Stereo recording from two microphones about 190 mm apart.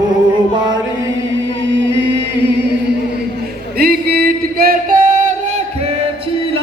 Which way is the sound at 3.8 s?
50° right (ahead or behind).